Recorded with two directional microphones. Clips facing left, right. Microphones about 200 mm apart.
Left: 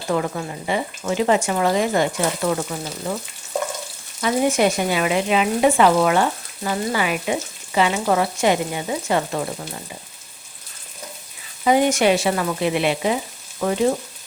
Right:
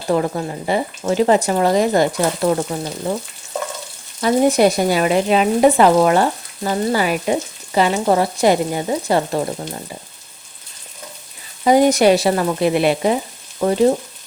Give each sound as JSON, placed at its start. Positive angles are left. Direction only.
{"t": 0.1, "sound": "speech", "side_deg": -35}
{"t": 4.2, "sound": "speech", "side_deg": -40}
{"t": 11.6, "sound": "speech", "side_deg": -40}